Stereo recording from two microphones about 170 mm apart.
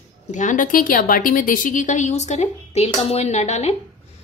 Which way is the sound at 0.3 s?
45° left (ahead or behind).